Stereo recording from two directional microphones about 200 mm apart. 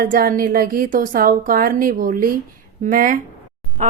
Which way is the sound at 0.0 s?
45° right (ahead or behind).